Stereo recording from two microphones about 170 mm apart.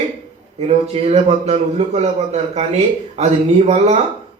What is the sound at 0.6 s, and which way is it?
A man's voice, 40° right (ahead or behind).